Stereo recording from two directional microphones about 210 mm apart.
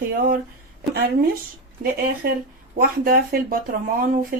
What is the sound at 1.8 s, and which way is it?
Speech, 45° right (ahead or behind).